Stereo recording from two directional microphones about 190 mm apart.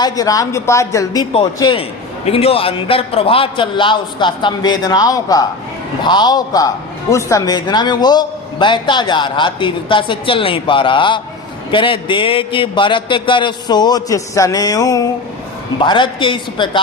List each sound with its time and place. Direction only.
0.0 s a man's voice: 20° left (ahead or behind)